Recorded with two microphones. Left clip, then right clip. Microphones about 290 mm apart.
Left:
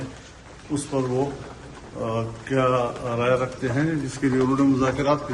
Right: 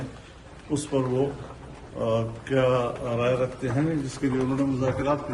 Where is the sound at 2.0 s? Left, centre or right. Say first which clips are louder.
Right 2 dB; centre.